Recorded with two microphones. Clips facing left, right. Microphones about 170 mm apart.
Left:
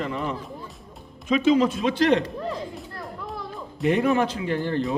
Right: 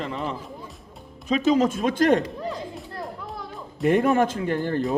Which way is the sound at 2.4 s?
Centre (ahead or behind).